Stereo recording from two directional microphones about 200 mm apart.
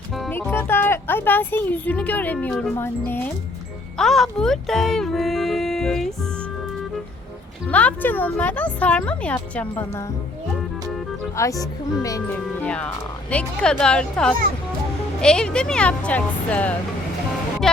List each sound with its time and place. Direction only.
0.2 s speech: 10° left (ahead or behind)
7.7 s speech: 5° left (ahead or behind)
11.3 s a woman's voice: 15° left (ahead or behind)